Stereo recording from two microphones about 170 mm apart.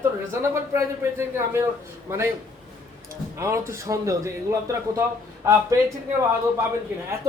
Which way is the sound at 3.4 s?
15° right (ahead or behind).